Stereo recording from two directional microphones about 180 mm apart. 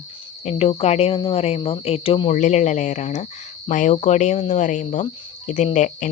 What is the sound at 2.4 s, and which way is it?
Speech, 40° left (ahead or behind).